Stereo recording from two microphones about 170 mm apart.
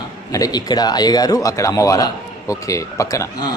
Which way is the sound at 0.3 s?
20° left (ahead or behind).